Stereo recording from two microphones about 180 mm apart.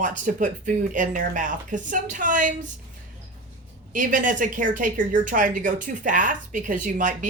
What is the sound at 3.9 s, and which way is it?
A woman's voice, 45° right (ahead or behind).